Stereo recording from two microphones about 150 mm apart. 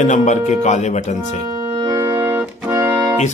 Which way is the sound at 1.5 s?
25° right (ahead or behind).